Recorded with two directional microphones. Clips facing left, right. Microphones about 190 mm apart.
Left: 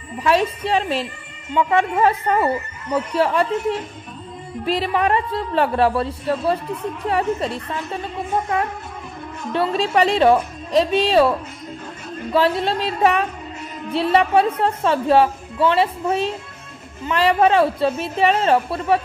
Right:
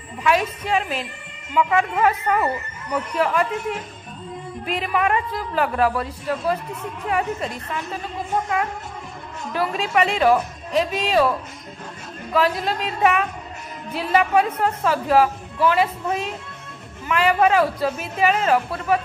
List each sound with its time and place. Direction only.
0.2 s a man's voice: 35° left (ahead or behind)
9.5 s a man's voice: 30° left (ahead or behind)
12.4 s a man's voice: 30° left (ahead or behind)